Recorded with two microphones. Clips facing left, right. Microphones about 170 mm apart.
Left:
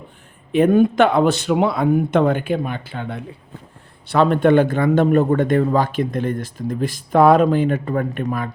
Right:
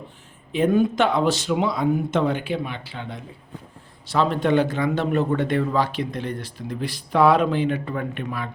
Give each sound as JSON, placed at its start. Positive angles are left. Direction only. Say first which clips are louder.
{"t": 0.5, "sound": "a man's voice", "louder": "left 5 dB", "side_deg": 55}